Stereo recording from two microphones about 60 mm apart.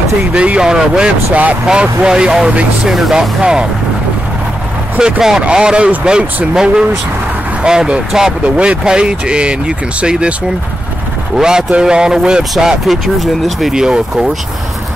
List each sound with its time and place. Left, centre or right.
0.3 s speech: centre
5.4 s speech: centre
11.3 s speech: centre